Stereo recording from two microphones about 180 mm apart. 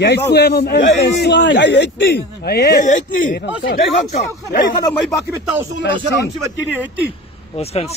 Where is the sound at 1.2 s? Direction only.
75° left (ahead or behind); by 2.8 s 60° left (ahead or behind).